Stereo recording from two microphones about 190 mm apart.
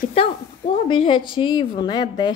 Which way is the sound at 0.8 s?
25° left (ahead or behind).